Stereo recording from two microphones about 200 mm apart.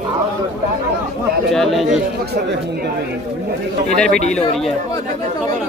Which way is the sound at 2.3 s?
55° right (ahead or behind).